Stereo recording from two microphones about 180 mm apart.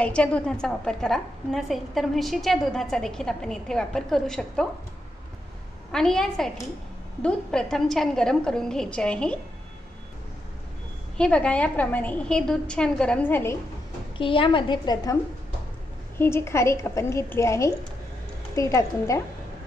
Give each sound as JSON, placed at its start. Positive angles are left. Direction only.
{"t": 0.0, "sound": "a woman's voice", "side_deg": 5}
{"t": 5.9, "sound": "a woman's voice", "side_deg": 5}
{"t": 11.1, "sound": "a woman's voice", "side_deg": 5}
{"t": 14.1, "sound": "a woman's voice", "side_deg": 30}
{"t": 16.2, "sound": "a woman's voice", "side_deg": 15}